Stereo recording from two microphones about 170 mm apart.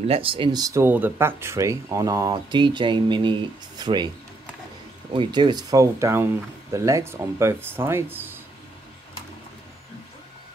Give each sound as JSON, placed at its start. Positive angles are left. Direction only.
{"t": 0.0, "sound": "speech", "side_deg": -35}
{"t": 5.1, "sound": "speech", "side_deg": -25}